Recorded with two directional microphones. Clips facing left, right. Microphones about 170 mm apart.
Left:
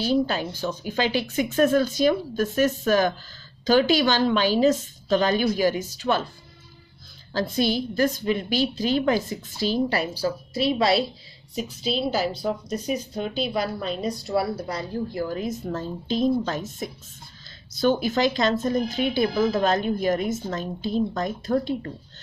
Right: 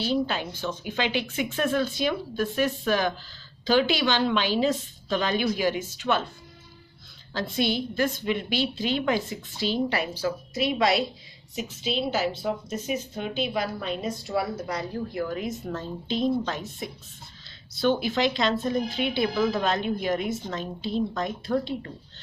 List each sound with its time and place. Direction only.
0.0 s a woman's voice: 40° left (ahead or behind)
7.3 s a woman's voice: 40° left (ahead or behind)